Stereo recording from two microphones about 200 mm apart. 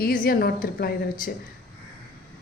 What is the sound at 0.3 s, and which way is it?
Speech, 50° left (ahead or behind).